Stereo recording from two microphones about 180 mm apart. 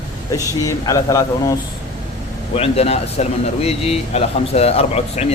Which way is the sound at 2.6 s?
35° left (ahead or behind).